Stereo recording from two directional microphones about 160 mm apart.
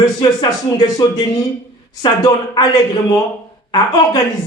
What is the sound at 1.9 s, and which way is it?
Speech, 25° left (ahead or behind).